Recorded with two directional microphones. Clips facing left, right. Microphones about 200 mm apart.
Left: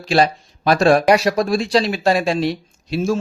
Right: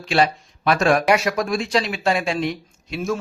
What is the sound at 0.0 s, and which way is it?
Speech, 35° left (ahead or behind).